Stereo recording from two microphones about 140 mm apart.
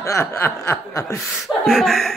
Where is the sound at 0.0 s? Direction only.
20° left (ahead or behind).